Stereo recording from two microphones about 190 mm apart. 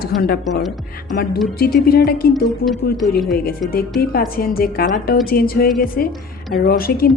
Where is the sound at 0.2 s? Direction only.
55° left (ahead or behind).